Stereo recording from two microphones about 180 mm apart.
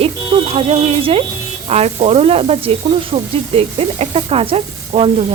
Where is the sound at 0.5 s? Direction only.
35° right (ahead or behind).